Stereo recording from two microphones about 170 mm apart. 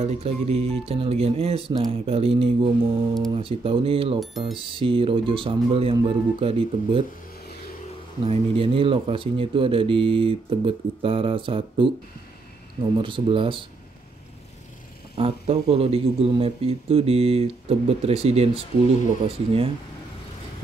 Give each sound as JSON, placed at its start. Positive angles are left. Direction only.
{"t": 0.0, "sound": "speech", "side_deg": -35}
{"t": 8.3, "sound": "speech", "side_deg": -30}
{"t": 12.9, "sound": "speech", "side_deg": -30}
{"t": 15.1, "sound": "speech", "side_deg": -35}